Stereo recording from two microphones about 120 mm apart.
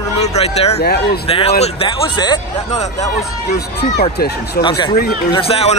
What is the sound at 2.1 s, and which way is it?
Speech, 35° left (ahead or behind).